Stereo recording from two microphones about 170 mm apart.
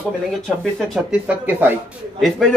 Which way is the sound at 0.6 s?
Centre (ahead or behind).